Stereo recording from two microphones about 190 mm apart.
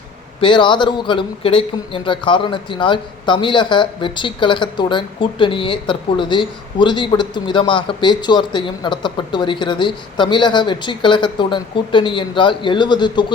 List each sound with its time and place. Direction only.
0.4 s a man's voice: 25° left (ahead or behind)